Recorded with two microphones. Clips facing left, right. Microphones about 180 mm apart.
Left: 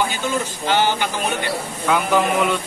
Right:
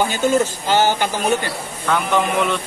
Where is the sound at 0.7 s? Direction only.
45° right (ahead or behind).